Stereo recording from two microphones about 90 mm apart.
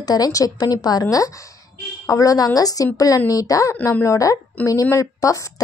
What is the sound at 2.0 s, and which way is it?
Speech, 35° left (ahead or behind).